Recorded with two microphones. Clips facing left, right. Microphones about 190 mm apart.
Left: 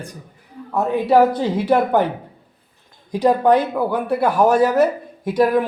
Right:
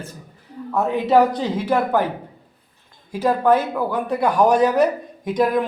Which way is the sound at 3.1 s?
15° left (ahead or behind).